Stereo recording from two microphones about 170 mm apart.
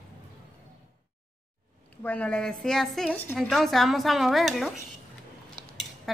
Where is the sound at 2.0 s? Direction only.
10° left (ahead or behind).